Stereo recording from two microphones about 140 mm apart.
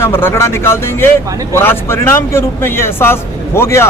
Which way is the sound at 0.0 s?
15° left (ahead or behind).